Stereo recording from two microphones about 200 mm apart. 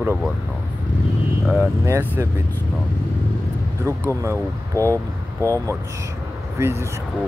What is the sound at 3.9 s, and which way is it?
Speech, 15° right (ahead or behind).